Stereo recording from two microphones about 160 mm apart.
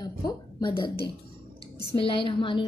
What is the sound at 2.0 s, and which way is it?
Speech, 35° left (ahead or behind).